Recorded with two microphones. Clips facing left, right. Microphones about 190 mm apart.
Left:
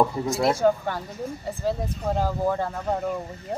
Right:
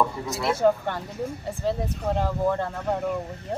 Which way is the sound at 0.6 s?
Centre (ahead or behind).